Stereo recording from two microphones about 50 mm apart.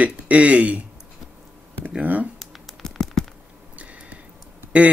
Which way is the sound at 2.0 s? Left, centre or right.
Right.